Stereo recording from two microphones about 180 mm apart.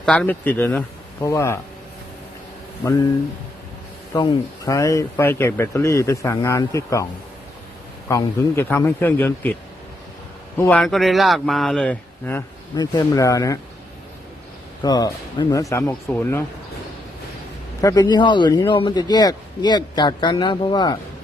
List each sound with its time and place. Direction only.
0.0 s speech: 5° left (ahead or behind)
4.1 s speech: 20° left (ahead or behind)
10.6 s speech: 5° left (ahead or behind)
14.8 s speech: 20° left (ahead or behind)
17.7 s speech: 20° left (ahead or behind)